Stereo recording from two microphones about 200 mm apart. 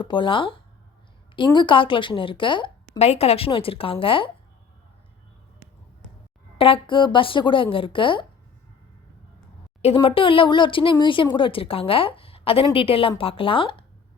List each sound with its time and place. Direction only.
0.0 s speech: 25° left (ahead or behind)
6.6 s speech: 25° left (ahead or behind)
9.8 s speech: 25° left (ahead or behind)